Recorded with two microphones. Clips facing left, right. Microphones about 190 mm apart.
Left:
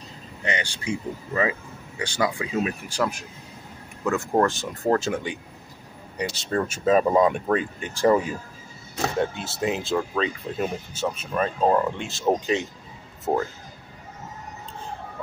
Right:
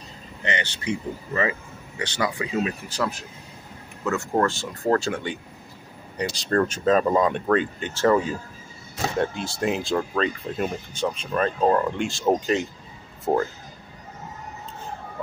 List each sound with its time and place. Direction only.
0.4 s speech: 10° left (ahead or behind)
4.5 s speech: 20° left (ahead or behind)
6.1 s speech: 5° left (ahead or behind)
9.2 s speech: centre (ahead or behind)